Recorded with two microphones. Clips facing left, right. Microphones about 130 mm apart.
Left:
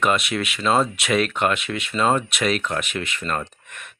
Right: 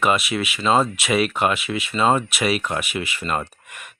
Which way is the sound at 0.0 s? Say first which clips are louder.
Right 1 dB; 5° right (ahead or behind).